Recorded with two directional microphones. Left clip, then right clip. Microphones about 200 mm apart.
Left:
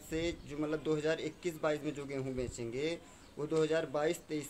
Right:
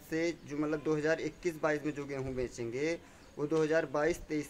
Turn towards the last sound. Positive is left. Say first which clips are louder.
# right 2 dB
turn(degrees=-10)  # may be behind; listen again after turning